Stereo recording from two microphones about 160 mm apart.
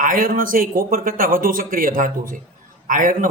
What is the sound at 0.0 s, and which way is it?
A man's voice, 60° right (ahead or behind).